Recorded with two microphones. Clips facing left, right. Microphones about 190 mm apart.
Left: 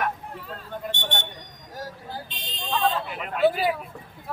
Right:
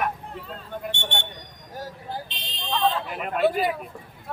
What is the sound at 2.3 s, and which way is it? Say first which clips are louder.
Buzzer: left 1 dB; 45° left (ahead or behind).